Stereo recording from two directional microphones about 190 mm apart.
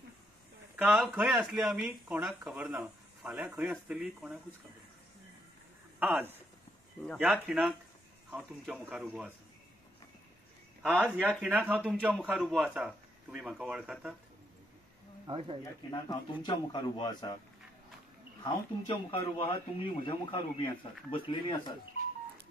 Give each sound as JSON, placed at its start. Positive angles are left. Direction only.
{"t": 0.7, "sound": "a man's voice", "side_deg": -10}
{"t": 5.9, "sound": "speech", "side_deg": -10}
{"t": 7.4, "sound": "a man's voice", "side_deg": -5}
{"t": 10.8, "sound": "a man's voice", "side_deg": 5}
{"t": 15.2, "sound": "speech", "side_deg": -30}
{"t": 15.9, "sound": "speech", "side_deg": 20}
{"t": 18.4, "sound": "speech", "side_deg": 25}